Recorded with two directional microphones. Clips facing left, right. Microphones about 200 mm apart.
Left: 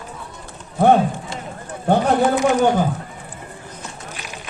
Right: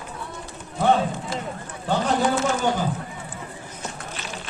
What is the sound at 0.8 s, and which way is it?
Clip-clop, 55° left (ahead or behind).